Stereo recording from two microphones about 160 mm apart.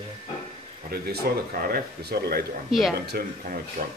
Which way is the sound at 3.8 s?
55° right (ahead or behind).